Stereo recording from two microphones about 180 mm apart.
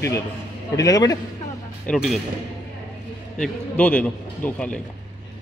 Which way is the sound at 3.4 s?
5° left (ahead or behind).